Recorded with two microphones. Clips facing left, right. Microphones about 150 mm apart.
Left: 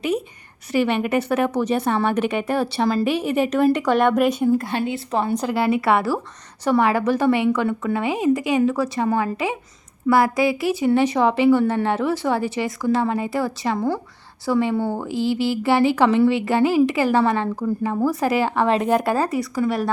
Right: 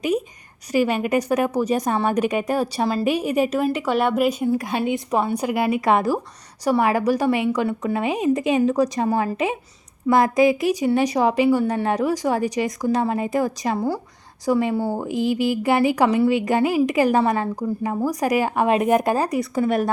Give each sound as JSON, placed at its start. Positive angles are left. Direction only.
{"t": 1.2, "sound": "a woman's voice", "side_deg": -15}